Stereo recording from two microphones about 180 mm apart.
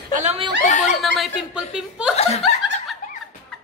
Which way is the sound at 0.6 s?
40° left (ahead or behind).